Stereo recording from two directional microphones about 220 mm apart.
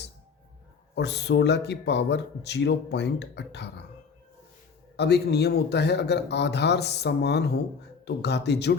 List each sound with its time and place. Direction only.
0.9 s a man's voice: 50° left (ahead or behind)
4.9 s a man's voice: 50° left (ahead or behind)